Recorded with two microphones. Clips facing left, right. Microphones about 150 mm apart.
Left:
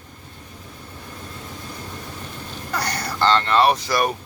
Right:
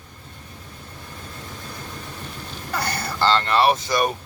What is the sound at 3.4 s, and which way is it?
Speech, 10° right (ahead or behind).